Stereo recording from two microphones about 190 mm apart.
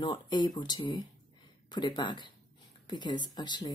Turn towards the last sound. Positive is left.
turn(degrees=20)  # may be behind; listen again after turning